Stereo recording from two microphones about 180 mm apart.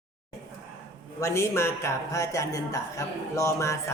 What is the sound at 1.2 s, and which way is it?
Speech, 15° left (ahead or behind).